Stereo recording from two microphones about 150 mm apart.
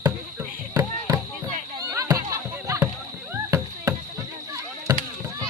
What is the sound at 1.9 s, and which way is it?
Music, 25° right (ahead or behind).